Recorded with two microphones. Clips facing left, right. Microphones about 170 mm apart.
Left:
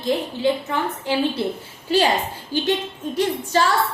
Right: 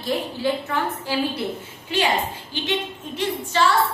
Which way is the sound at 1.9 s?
35° left (ahead or behind).